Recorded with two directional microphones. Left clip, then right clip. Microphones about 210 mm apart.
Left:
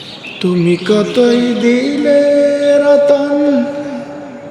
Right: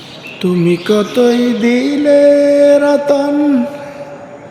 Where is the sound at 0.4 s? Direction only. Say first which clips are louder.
Even; 5° right (ahead or behind).